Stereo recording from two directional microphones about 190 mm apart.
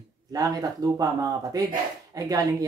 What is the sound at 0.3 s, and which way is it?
Speech, 20° right (ahead or behind).